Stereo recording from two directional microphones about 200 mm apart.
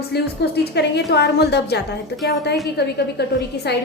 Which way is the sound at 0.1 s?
55° left (ahead or behind).